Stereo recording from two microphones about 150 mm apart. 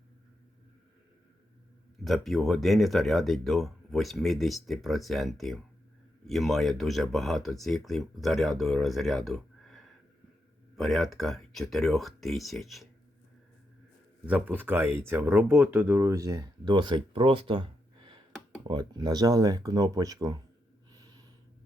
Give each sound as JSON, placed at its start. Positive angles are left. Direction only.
{"t": 2.0, "sound": "speech", "side_deg": 0}
{"t": 14.3, "sound": "speech", "side_deg": -10}
{"t": 20.9, "sound": "gasp", "side_deg": -25}